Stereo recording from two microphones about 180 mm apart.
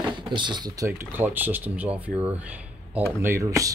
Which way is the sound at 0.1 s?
25° right (ahead or behind).